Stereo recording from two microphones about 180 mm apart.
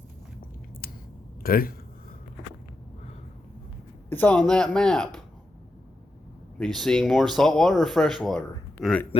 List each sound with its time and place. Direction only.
0.8 s a sound: 60° left (ahead or behind)
1.4 s speech: 55° left (ahead or behind)
4.1 s speech: 10° left (ahead or behind)
6.7 s speech: centre (ahead or behind)